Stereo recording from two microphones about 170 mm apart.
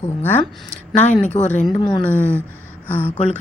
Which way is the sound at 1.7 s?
25° left (ahead or behind).